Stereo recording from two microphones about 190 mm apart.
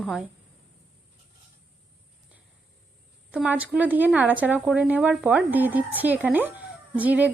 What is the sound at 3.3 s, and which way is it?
Speech, 5° right (ahead or behind).